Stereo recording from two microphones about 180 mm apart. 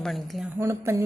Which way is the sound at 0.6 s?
15° right (ahead or behind).